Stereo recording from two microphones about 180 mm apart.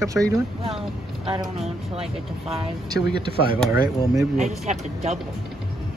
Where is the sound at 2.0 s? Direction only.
35° right (ahead or behind).